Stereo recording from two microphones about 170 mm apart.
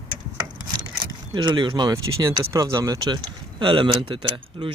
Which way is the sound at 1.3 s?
30° right (ahead or behind).